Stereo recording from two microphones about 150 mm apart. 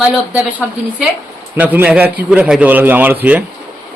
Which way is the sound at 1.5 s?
10° right (ahead or behind).